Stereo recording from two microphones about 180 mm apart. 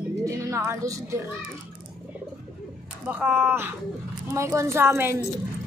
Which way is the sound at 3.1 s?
10° right (ahead or behind).